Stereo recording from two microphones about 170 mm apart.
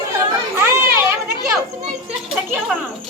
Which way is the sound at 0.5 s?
15° right (ahead or behind).